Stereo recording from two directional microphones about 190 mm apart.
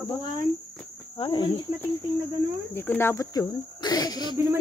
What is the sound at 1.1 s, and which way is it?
Speech, 25° left (ahead or behind).